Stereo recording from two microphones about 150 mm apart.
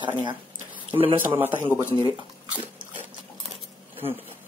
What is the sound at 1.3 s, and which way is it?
Speech, 15° right (ahead or behind).